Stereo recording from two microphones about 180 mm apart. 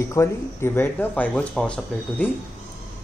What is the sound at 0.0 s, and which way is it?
Speech, 15° left (ahead or behind).